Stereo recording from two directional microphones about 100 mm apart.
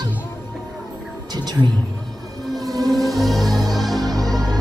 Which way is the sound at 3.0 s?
Centre (ahead or behind).